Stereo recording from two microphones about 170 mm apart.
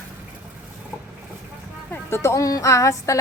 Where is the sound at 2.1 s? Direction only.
15° left (ahead or behind).